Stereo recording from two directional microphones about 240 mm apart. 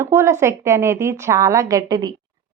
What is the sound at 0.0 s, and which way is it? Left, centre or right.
A woman's voice, centre.